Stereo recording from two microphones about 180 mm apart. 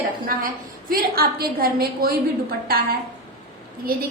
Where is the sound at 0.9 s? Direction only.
55° right (ahead or behind).